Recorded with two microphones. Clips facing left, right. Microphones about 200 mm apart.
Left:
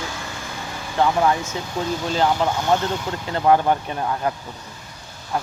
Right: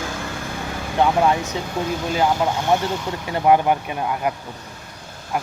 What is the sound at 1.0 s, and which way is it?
Speech, 20° right (ahead or behind).